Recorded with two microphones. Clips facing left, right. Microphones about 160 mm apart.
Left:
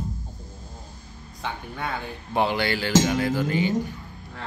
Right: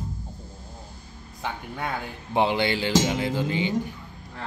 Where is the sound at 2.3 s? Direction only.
20° right (ahead or behind).